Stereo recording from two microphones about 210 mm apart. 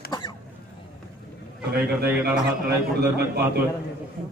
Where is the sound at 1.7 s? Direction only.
45° right (ahead or behind).